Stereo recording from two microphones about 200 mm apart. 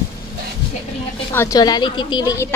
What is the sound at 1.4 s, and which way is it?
A woman's voice, 20° left (ahead or behind).